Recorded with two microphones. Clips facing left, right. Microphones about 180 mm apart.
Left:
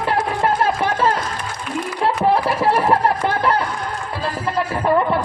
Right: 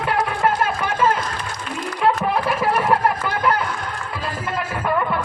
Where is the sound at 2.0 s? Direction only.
30° left (ahead or behind).